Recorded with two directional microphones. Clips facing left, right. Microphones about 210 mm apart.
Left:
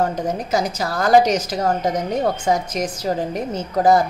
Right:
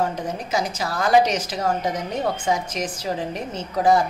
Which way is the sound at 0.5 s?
40° left (ahead or behind).